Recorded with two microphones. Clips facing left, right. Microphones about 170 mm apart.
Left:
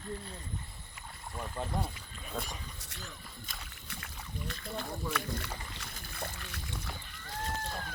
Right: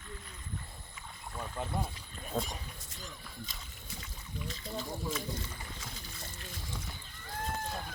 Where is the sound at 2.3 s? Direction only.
25° right (ahead or behind).